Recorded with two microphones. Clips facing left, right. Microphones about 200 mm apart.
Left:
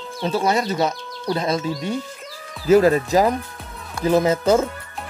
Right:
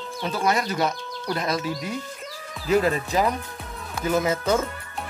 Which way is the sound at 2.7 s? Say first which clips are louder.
Left 7 dB; 40° left (ahead or behind).